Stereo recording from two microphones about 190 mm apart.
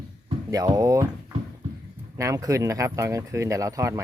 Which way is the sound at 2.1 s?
15° right (ahead or behind).